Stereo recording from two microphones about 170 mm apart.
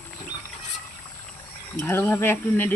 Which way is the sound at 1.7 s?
15° left (ahead or behind).